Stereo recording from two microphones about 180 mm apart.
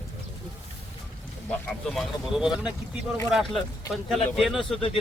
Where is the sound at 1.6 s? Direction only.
Centre (ahead or behind).